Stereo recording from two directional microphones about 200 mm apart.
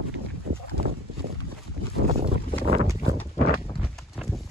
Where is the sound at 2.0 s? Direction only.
30° right (ahead or behind).